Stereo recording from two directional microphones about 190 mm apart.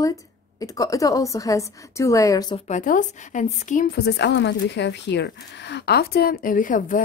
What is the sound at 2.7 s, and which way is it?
A woman's voice, 40° left (ahead or behind).